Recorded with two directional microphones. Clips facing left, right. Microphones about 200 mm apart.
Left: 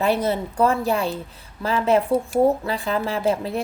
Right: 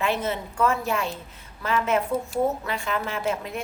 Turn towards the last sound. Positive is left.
turn(degrees=35)  # may be behind; listen again after turning